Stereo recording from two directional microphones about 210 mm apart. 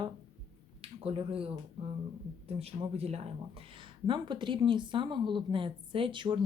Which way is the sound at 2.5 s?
30° right (ahead or behind).